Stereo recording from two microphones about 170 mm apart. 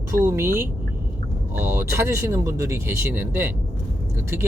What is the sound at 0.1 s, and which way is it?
Speech, 15° right (ahead or behind).